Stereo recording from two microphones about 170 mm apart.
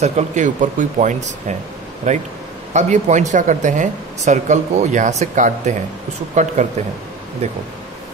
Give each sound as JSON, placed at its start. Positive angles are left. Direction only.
{"t": 0.0, "sound": "speech", "side_deg": -45}